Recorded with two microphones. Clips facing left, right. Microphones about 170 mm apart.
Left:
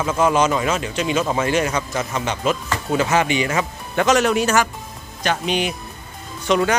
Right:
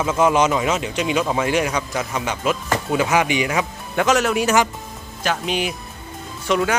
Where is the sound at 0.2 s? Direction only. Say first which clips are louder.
Even; 20° right (ahead or behind).